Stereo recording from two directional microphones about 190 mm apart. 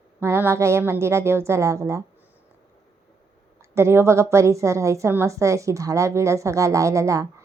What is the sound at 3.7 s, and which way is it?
A woman's voice, 15° right (ahead or behind).